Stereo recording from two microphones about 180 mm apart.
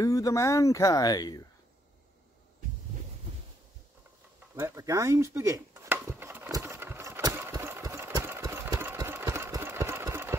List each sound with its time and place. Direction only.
0.0 s speech: 20° left (ahead or behind)
4.6 s chopping: 15° right (ahead or behind)